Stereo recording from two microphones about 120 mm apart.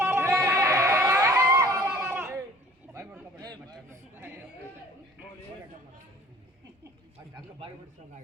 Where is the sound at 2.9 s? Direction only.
15° right (ahead or behind).